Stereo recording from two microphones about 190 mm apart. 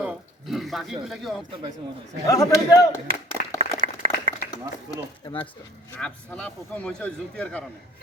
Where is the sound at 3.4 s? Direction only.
50° left (ahead or behind).